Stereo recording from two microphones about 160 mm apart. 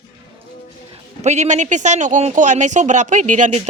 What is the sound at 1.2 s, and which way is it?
Speech, 45° right (ahead or behind).